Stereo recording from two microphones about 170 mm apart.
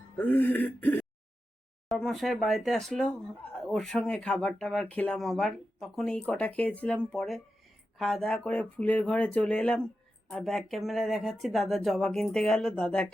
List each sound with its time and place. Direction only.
0.2 s speech: 10° left (ahead or behind)